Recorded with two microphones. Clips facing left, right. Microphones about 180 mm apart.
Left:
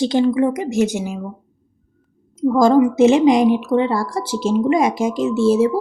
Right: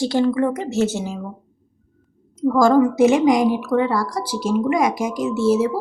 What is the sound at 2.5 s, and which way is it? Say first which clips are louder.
A woman's voice: left 2 dB; 20° left (ahead or behind).